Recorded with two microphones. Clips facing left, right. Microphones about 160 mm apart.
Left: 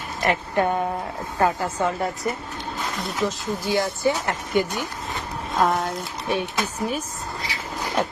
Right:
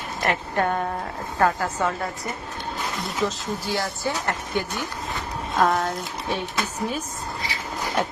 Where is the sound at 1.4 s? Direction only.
10° left (ahead or behind).